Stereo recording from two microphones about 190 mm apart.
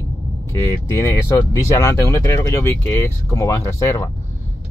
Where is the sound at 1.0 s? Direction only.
15° left (ahead or behind).